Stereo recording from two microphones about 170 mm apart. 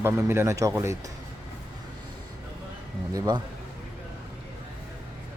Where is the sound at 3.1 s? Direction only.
25° right (ahead or behind).